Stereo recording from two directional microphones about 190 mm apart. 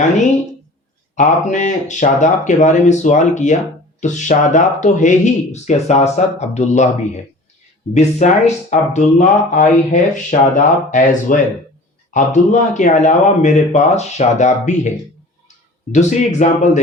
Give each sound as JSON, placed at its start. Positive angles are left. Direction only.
{"t": 1.1, "sound": "speech", "side_deg": 40}